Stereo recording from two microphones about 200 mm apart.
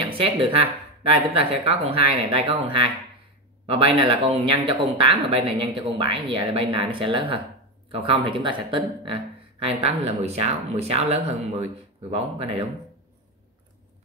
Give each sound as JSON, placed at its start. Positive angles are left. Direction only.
{"t": 0.0, "sound": "speech", "side_deg": -25}
{"t": 12.4, "sound": "speech", "side_deg": -25}